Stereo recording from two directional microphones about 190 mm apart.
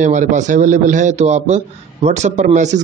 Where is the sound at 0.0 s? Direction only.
40° right (ahead or behind).